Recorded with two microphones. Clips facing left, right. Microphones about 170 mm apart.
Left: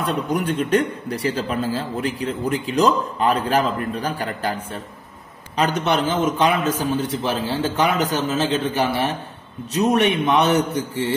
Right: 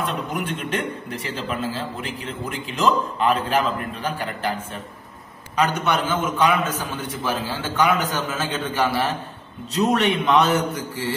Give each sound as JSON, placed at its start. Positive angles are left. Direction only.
{"t": 0.1, "sound": "a man's voice", "side_deg": 40}
{"t": 5.6, "sound": "a man's voice", "side_deg": 30}